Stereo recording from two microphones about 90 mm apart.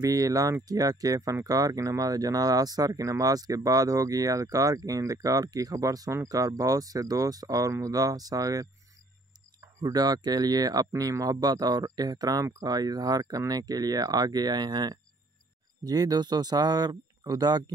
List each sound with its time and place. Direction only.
0.0 s speech: 40° right (ahead or behind)